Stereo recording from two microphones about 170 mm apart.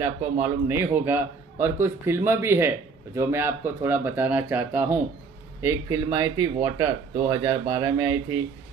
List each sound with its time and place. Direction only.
0.0 s a man's voice: 15° right (ahead or behind)